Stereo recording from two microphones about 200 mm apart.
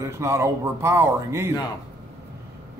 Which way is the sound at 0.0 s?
15° right (ahead or behind).